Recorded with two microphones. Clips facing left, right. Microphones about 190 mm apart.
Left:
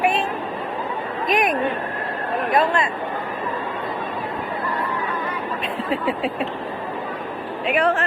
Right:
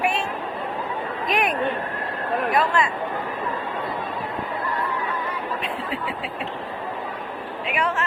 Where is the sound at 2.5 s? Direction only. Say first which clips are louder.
Left 3 dB; 25° left (ahead or behind).